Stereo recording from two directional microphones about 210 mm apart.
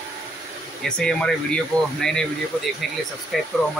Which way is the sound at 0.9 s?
5° left (ahead or behind).